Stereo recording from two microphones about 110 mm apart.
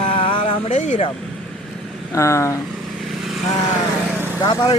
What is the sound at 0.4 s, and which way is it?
Music, 90° left.